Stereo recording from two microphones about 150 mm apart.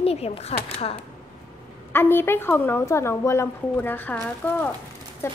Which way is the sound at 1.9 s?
15° left (ahead or behind).